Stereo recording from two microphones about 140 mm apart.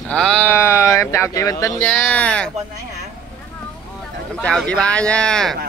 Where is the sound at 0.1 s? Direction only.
5° left (ahead or behind).